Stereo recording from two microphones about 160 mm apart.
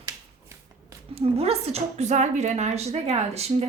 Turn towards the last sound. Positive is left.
turn(degrees=-40)  # may be behind; listen again after turning